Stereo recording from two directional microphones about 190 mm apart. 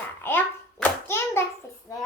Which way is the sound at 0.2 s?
10° left (ahead or behind).